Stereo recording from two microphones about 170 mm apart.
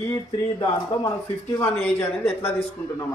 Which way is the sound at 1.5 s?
10° left (ahead or behind).